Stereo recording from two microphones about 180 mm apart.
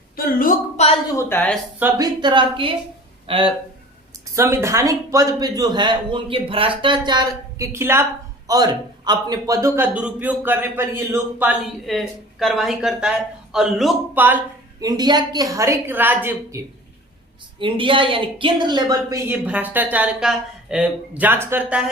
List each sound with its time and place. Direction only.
0.3 s a woman's voice: 50° left (ahead or behind)
1.1 s a woman's voice: 10° left (ahead or behind)
1.8 s a man's voice: 25° right (ahead or behind)
4.4 s a man's voice: 15° right (ahead or behind)
11.9 s speech: centre (ahead or behind)
17.6 s a man's voice: 30° right (ahead or behind)
19.3 s speech: 10° right (ahead or behind)